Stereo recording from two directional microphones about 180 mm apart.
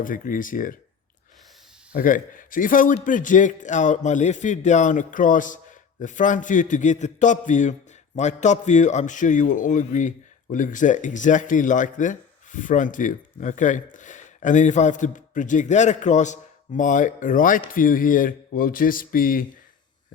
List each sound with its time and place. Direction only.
0.0 s a man's voice: 50° left (ahead or behind)
1.9 s a man's voice: 50° left (ahead or behind)